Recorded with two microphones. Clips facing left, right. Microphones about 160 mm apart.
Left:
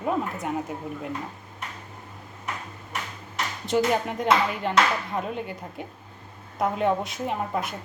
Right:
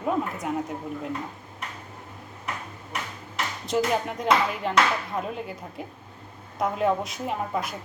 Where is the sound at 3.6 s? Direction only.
Centre (ahead or behind).